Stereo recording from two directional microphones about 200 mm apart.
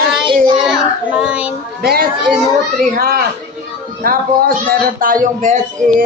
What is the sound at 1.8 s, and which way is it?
Speech, 50° right (ahead or behind).